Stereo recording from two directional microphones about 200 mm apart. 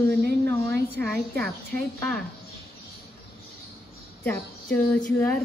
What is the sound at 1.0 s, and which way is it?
A woman's voice, 5° left (ahead or behind).